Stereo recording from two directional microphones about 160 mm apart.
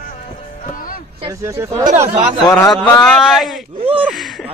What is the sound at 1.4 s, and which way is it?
Speech, 20° right (ahead or behind).